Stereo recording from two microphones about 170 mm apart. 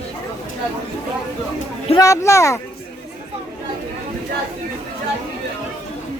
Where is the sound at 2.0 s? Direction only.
20° left (ahead or behind).